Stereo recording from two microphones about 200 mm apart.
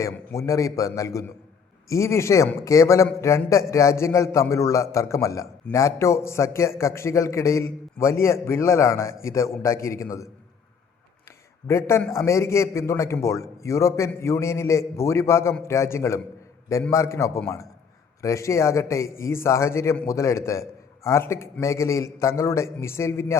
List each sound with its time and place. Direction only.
0.0 s a man's voice: 15° left (ahead or behind)
11.7 s a man's voice: 15° left (ahead or behind)